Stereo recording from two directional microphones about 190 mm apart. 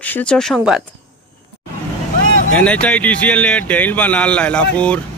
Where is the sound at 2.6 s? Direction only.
5° left (ahead or behind).